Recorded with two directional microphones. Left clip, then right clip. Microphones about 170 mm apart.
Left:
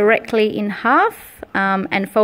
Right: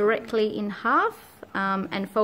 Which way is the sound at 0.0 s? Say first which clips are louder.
Left 8 dB; 30° left (ahead or behind).